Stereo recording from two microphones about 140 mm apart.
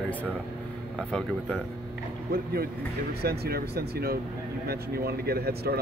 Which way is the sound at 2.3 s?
90° right.